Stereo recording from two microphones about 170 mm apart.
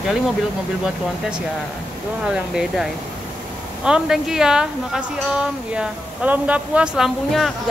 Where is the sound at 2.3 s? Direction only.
5° right (ahead or behind).